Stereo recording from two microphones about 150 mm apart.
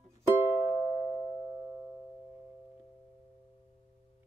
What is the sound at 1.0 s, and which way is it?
Music, 20° left (ahead or behind).